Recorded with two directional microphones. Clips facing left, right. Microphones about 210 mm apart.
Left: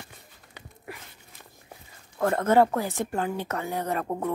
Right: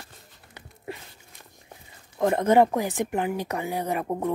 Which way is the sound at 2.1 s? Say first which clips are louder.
Right 2 dB; 15° right (ahead or behind).